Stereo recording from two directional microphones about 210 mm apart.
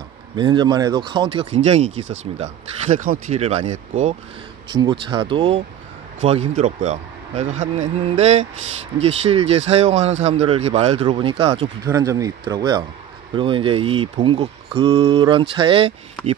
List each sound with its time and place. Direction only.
0.4 s speech: 20° right (ahead or behind)
4.6 s speech: 20° right (ahead or behind)
11.8 s speech: 15° right (ahead or behind)
16.2 s speech: 5° left (ahead or behind)